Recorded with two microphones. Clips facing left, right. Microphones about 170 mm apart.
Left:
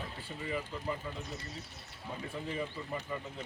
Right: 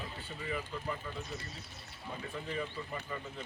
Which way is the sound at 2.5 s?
20° left (ahead or behind).